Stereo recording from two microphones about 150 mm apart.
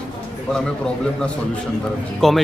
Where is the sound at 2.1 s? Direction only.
Centre (ahead or behind).